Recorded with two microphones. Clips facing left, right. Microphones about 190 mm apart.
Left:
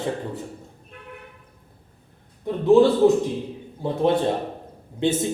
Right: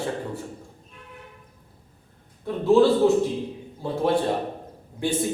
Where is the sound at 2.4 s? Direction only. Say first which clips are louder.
Left 2 dB; 15° left (ahead or behind).